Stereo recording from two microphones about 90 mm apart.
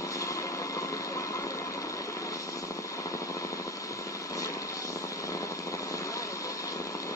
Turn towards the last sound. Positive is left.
turn(degrees=40)  # may be behind; listen again after turning